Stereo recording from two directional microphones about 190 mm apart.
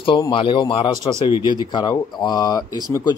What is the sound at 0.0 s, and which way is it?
Speech, 25° left (ahead or behind).